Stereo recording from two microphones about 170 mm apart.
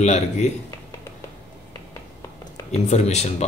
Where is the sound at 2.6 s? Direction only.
40° left (ahead or behind).